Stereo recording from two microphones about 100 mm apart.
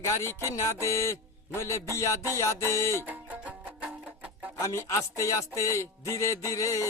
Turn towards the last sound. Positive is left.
turn(degrees=30)  # may be behind; listen again after turning